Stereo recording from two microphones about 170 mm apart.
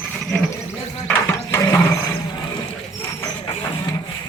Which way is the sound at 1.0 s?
15° left (ahead or behind).